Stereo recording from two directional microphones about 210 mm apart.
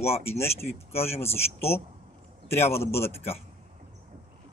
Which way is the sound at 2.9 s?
10° left (ahead or behind).